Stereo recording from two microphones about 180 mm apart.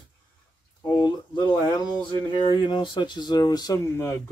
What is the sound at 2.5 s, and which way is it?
Speech, 25° left (ahead or behind).